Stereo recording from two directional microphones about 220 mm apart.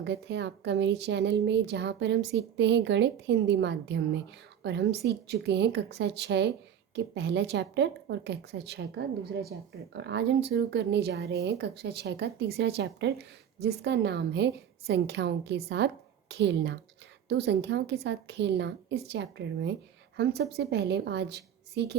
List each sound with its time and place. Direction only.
0.0 s speech: 50° right (ahead or behind)